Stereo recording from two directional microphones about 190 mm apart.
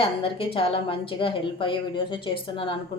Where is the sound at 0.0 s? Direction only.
30° left (ahead or behind).